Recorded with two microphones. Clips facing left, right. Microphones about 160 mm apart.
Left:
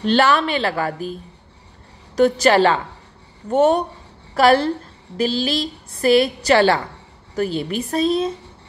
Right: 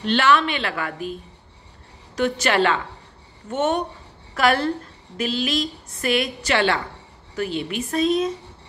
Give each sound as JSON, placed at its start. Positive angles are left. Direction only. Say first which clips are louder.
{"t": 0.0, "sound": "a woman's voice", "louder": "left 2 dB", "side_deg": 35}
{"t": 2.1, "sound": "a woman's voice", "louder": "left 6 dB", "side_deg": 35}